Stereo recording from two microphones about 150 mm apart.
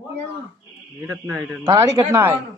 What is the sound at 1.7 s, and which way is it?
Speech, 25° right (ahead or behind).